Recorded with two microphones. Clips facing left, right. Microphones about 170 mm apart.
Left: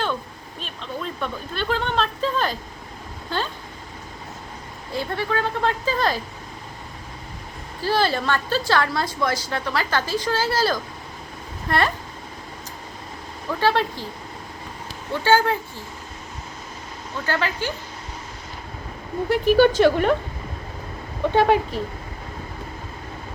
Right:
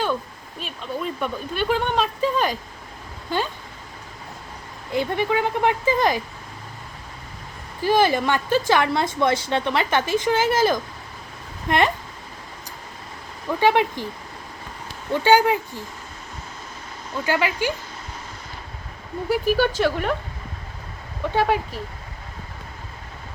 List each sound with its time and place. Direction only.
0.6 s speech: 10° right (ahead or behind)
4.9 s speech: 15° right (ahead or behind)
7.8 s speech: 15° right (ahead or behind)
13.6 s speech: 15° right (ahead or behind)
15.1 s speech: 15° right (ahead or behind)
17.2 s speech: 15° right (ahead or behind)
19.3 s speech: 5° right (ahead or behind)
21.3 s speech: 5° right (ahead or behind)